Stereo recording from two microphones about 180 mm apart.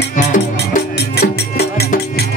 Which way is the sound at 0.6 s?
65° left (ahead or behind).